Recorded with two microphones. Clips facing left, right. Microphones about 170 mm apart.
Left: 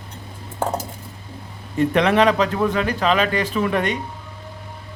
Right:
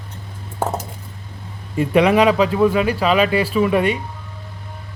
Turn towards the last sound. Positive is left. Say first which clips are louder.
# right 4 dB
turn(degrees=-10)  # may be behind; listen again after turning